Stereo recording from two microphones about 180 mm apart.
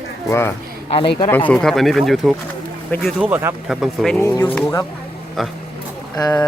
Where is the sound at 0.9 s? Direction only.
30° left (ahead or behind).